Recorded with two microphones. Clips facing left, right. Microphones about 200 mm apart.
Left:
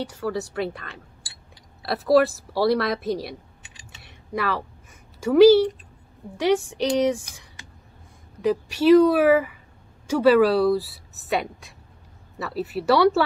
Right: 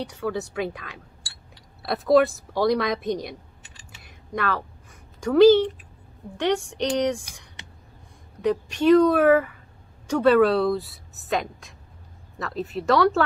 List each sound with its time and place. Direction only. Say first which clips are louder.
0.0 s a woman's voice: left 1 dB; centre (ahead or behind)
4.0 s a sound: left 1 dB; 5° left (ahead or behind)
5.2 s a woman's voice: left 1 dB; 10° left (ahead or behind)
8.4 s a woman's voice: left 1 dB; 5° left (ahead or behind)